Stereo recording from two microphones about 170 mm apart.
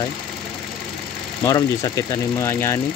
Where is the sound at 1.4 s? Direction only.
20° left (ahead or behind).